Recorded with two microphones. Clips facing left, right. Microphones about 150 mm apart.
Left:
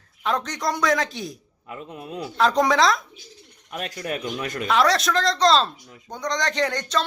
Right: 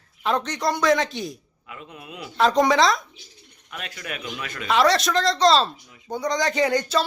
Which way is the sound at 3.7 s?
40° left (ahead or behind).